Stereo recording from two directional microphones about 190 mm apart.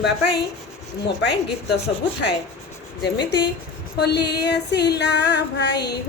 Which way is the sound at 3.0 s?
65° left (ahead or behind).